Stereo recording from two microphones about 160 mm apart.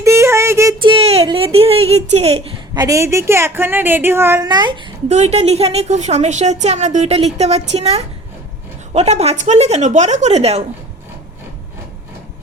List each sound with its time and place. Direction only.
0.0 s a sound: 15° right (ahead or behind)
0.8 s a woman's voice: 35° right (ahead or behind)
2.7 s a woman's voice: 20° right (ahead or behind)
4.4 s speech: 25° right (ahead or behind)
5.0 s a woman's voice: 40° right (ahead or behind)